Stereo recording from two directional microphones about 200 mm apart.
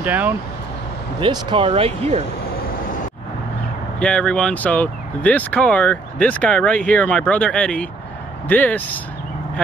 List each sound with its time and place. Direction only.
0.0 s speech: 10° right (ahead or behind)
1.2 s speech: 25° right (ahead or behind)
2.5 s vehicle: 45° left (ahead or behind)
4.0 s speech: 5° left (ahead or behind)